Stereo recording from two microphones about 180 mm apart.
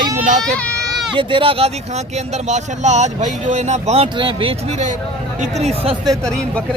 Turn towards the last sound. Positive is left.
turn(degrees=5)  # may be behind; listen again after turning